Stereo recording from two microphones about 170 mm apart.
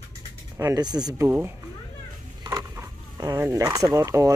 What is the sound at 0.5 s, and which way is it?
Speech, 20° right (ahead or behind).